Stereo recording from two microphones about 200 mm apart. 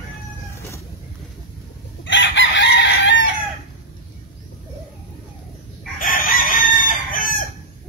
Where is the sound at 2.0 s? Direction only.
65° left (ahead or behind).